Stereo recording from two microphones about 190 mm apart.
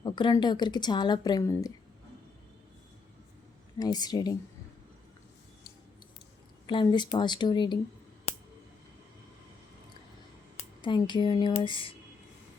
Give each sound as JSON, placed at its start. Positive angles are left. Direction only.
{"t": 0.0, "sound": "a woman's voice", "side_deg": 25}
{"t": 3.8, "sound": "a woman's voice", "side_deg": 20}
{"t": 6.7, "sound": "a woman's voice", "side_deg": 25}
{"t": 10.8, "sound": "a woman's voice", "side_deg": 25}